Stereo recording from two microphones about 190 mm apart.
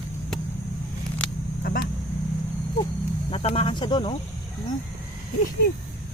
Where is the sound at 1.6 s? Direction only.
55° left (ahead or behind).